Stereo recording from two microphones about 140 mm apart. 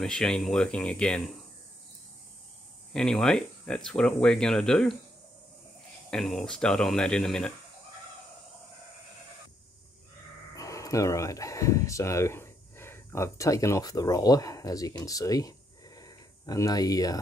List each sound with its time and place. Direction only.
0.0 s speech: 5° left (ahead or behind)
2.9 s speech: 5° left (ahead or behind)
6.0 s speech: 5° left (ahead or behind)
10.5 s speech: 25° left (ahead or behind)